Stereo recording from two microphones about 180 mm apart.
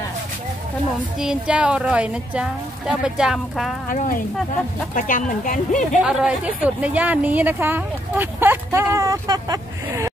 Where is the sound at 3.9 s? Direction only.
50° left (ahead or behind).